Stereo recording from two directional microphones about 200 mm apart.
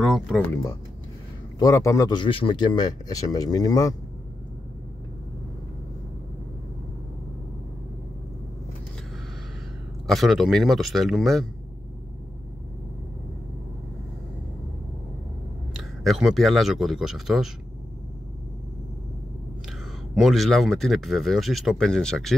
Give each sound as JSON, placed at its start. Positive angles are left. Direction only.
{"t": 0.0, "sound": "speech", "side_deg": 0}
{"t": 1.6, "sound": "speech", "side_deg": 15}
{"t": 10.0, "sound": "speech", "side_deg": 0}
{"t": 15.7, "sound": "speech", "side_deg": 0}
{"t": 20.2, "sound": "speech", "side_deg": 0}